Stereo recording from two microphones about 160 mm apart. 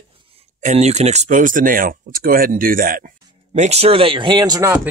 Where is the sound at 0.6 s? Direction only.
45° right (ahead or behind).